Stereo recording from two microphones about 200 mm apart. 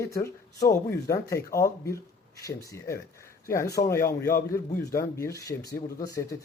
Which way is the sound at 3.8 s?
35° left (ahead or behind).